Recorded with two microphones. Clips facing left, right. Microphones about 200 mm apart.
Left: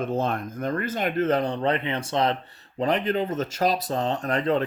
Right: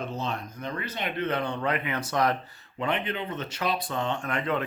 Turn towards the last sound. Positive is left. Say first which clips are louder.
# left 5 dB
turn(degrees=35)  # may be behind; listen again after turning